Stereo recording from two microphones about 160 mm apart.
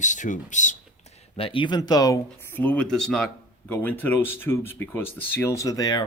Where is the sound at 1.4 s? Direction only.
35° left (ahead or behind).